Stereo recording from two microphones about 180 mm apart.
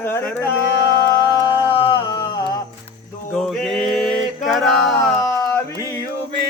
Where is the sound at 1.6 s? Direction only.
25° left (ahead or behind).